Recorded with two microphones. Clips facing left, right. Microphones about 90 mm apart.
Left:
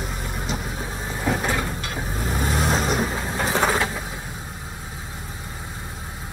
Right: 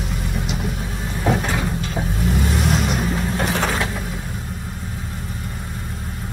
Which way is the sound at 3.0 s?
20° left (ahead or behind).